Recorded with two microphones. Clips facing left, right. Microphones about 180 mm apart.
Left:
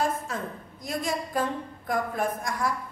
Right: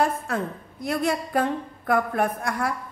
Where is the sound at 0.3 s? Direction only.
60° right (ahead or behind).